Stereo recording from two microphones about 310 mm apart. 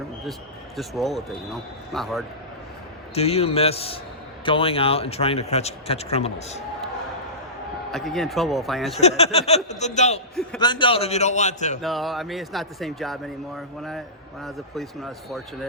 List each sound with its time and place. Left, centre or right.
0.8 s a man's voice: centre
3.2 s speech: centre
7.9 s a man's voice: centre
9.0 s speech: centre
11.8 s a man's voice: centre